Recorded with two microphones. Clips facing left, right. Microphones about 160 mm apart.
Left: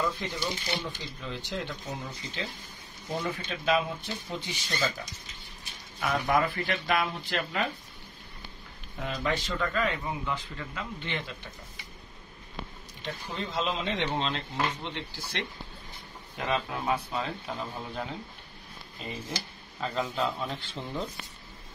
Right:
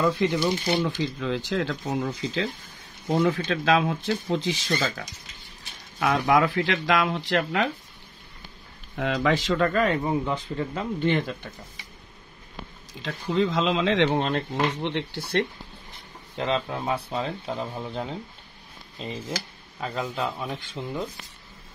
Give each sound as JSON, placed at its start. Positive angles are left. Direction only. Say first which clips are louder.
{"t": 0.0, "sound": "speech", "louder": "right 9 dB", "side_deg": -70}
{"t": 0.8, "sound": "speech", "louder": "right 11 dB", "side_deg": -90}
{"t": 5.9, "sound": "speech", "louder": "right 5 dB", "side_deg": -80}
{"t": 8.9, "sound": "speech", "louder": "right 7 dB", "side_deg": -90}
{"t": 9.7, "sound": "speech", "louder": "right 7 dB", "side_deg": -50}
{"t": 10.3, "sound": "speech", "louder": "right 8 dB", "side_deg": -30}
{"t": 13.0, "sound": "speech", "louder": "right 11 dB", "side_deg": -90}
{"t": 14.2, "sound": "speech", "louder": "right 6 dB", "side_deg": -60}
{"t": 16.3, "sound": "speech", "louder": "right 4 dB", "side_deg": -25}
{"t": 19.8, "sound": "speech", "louder": "right 1 dB", "side_deg": -10}